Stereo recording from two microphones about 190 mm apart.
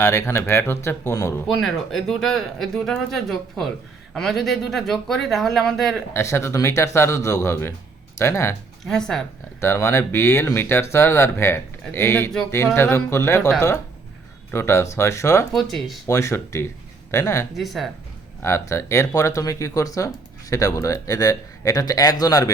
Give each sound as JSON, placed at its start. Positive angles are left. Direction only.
{"t": 0.0, "sound": "speech", "side_deg": 15}
{"t": 1.5, "sound": "speech", "side_deg": 0}
{"t": 6.1, "sound": "speech", "side_deg": 15}
{"t": 8.9, "sound": "speech", "side_deg": 5}
{"t": 9.6, "sound": "speech", "side_deg": 15}
{"t": 14.5, "sound": "speech", "side_deg": 15}
{"t": 15.5, "sound": "speech", "side_deg": 0}
{"t": 16.0, "sound": "speech", "side_deg": 15}
{"t": 17.5, "sound": "speech", "side_deg": 0}
{"t": 18.4, "sound": "speech", "side_deg": 15}